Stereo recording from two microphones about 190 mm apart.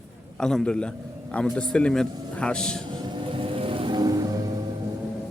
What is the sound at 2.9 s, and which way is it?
Music, 25° right (ahead or behind).